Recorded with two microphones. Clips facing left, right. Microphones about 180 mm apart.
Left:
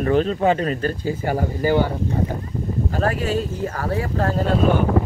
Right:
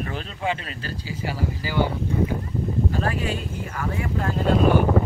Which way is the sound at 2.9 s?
40° left (ahead or behind).